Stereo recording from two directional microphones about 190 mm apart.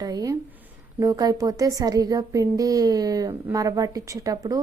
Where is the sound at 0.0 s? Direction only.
20° right (ahead or behind).